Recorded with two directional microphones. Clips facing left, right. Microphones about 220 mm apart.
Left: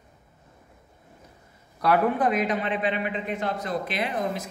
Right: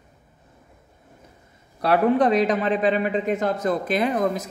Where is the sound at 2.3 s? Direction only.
35° right (ahead or behind).